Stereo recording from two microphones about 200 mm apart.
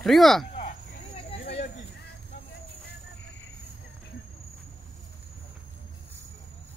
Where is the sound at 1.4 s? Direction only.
35° left (ahead or behind).